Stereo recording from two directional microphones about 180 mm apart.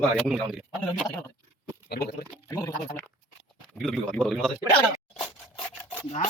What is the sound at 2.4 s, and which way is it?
Speech, 20° left (ahead or behind).